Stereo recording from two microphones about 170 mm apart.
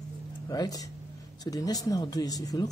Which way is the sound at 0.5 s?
20° left (ahead or behind).